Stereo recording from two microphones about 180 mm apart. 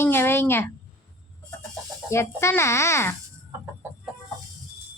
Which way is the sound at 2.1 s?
15° left (ahead or behind).